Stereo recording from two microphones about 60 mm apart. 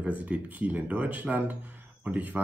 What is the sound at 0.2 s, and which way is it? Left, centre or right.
A man's voice, right.